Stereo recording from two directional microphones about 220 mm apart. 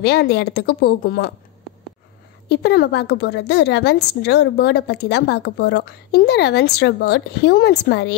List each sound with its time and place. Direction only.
0.0 s a woman's voice: 50° left (ahead or behind)
2.5 s a woman's voice: 45° left (ahead or behind)